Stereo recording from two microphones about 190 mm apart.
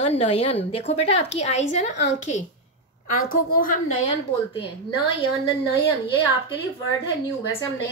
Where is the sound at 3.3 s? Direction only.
45° left (ahead or behind).